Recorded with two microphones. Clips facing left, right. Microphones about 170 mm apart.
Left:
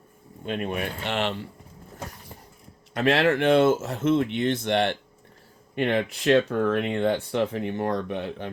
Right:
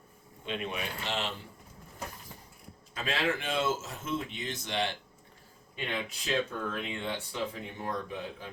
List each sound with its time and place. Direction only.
0.4 s speech: 50° left (ahead or behind)
2.9 s speech: 70° left (ahead or behind)